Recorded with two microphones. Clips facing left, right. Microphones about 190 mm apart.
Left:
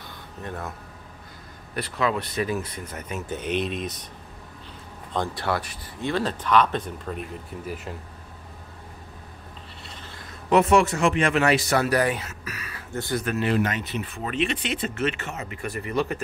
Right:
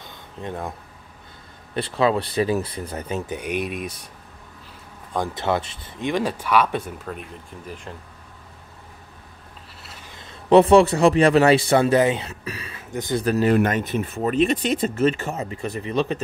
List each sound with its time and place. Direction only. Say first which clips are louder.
0.0 s a sound: right 3 dB; 20° right (ahead or behind)
1.7 s speech: right 5 dB; 30° right (ahead or behind)
3.3 s speech: even; 10° right (ahead or behind)
5.1 s speech: right 3 dB; 15° right (ahead or behind); by 7.9 s 5° left (ahead or behind)
9.8 s a sound: even; 10° right (ahead or behind)
10.5 s speech: right 6 dB; 30° right (ahead or behind)
12.9 s speech: right 3 dB; 15° right (ahead or behind)
13.2 s speech: right 8 dB; 35° right (ahead or behind)
13.6 s speech: right 5 dB; 50° right (ahead or behind); by 16.2 s 20° right (ahead or behind)